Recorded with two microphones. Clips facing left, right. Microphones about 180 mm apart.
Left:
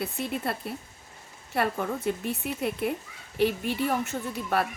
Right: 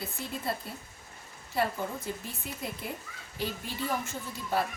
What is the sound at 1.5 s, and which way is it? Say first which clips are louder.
A woman's voice: left 3 dB; 65° left (ahead or behind).